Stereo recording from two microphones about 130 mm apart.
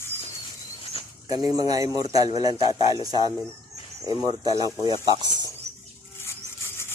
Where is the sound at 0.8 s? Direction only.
45° left (ahead or behind).